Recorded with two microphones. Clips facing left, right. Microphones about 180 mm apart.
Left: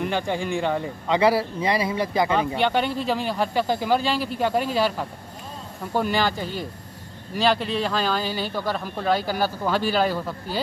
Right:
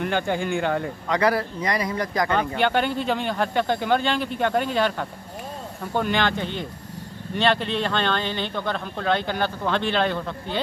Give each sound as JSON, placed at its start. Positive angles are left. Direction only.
{"t": 0.0, "sound": "speech", "side_deg": 0}
{"t": 1.0, "sound": "speech", "side_deg": 25}
{"t": 2.2, "sound": "speech", "side_deg": 0}